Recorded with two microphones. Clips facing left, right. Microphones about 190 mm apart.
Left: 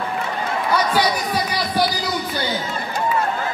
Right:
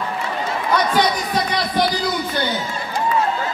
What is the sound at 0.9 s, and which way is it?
Music, 10° left (ahead or behind).